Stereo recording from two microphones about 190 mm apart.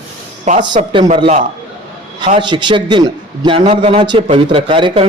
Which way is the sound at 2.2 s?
25° right (ahead or behind).